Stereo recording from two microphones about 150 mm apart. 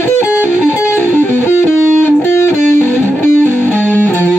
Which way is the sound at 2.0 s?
15° left (ahead or behind).